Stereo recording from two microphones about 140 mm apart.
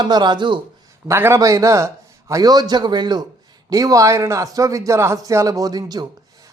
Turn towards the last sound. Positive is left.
turn(degrees=-30)  # may be behind; listen again after turning